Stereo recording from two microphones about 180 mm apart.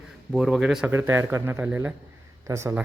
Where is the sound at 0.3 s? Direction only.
5° right (ahead or behind).